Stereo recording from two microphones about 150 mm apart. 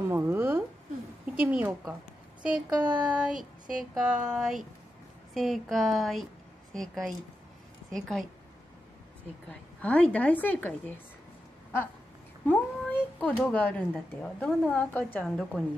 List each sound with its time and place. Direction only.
0.1 s a sound: 15° right (ahead or behind)
1.4 s a woman's voice: 10° right (ahead or behind)
9.5 s a woman's voice: 10° left (ahead or behind)
12.4 s a woman's voice: 10° left (ahead or behind)